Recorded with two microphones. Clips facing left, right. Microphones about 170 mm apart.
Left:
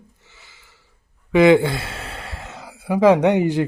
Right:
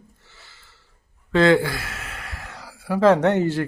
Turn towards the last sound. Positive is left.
turn(degrees=15)  # may be behind; listen again after turning